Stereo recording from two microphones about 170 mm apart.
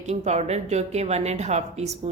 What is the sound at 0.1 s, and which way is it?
Speech, 40° right (ahead or behind).